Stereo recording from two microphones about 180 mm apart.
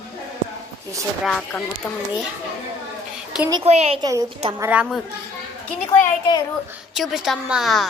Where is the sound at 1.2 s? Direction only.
5° left (ahead or behind).